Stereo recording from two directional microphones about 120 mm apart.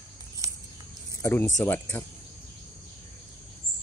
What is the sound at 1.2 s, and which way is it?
Speech, 20° left (ahead or behind).